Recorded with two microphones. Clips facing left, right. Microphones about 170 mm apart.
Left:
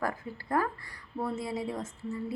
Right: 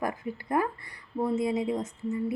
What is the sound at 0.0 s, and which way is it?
A woman's voice, 20° right (ahead or behind).